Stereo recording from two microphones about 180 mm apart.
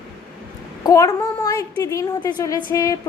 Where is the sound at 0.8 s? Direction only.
20° left (ahead or behind).